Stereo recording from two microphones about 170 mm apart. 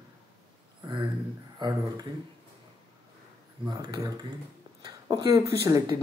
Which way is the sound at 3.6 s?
20° right (ahead or behind).